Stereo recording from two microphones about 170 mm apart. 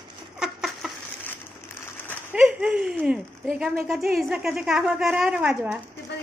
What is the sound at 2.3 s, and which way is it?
A woman's voice, 5° right (ahead or behind).